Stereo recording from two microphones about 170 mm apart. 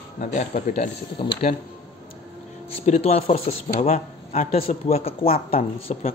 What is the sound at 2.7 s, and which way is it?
Speech, 35° left (ahead or behind).